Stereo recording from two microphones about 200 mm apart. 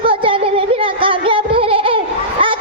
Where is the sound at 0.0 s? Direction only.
25° right (ahead or behind).